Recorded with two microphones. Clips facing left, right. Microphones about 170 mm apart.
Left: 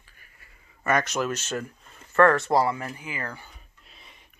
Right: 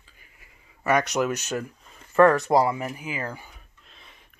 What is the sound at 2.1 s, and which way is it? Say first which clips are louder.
Speech: right 2 dB; 15° right (ahead or behind).